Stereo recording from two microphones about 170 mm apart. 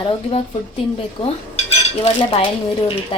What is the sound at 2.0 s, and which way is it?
Speech, 35° left (ahead or behind).